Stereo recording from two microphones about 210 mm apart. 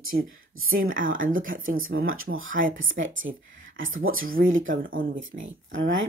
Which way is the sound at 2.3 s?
60° right (ahead or behind).